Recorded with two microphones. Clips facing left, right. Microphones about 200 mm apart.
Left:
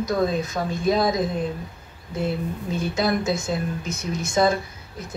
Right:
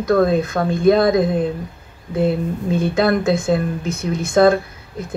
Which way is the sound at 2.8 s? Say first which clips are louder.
Right 6 dB; 55° right (ahead or behind).